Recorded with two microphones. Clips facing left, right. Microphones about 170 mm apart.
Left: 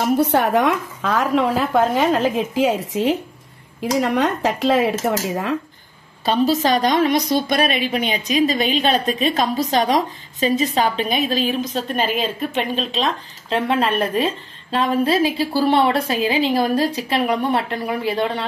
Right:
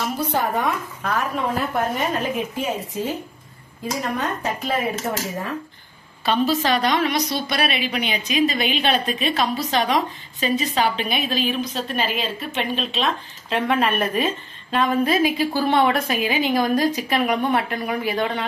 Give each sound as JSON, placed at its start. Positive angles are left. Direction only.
{"t": 0.2, "sound": "a woman's voice", "side_deg": 75}
{"t": 5.0, "sound": "cutlery", "side_deg": 75}
{"t": 6.2, "sound": "a woman's voice", "side_deg": 40}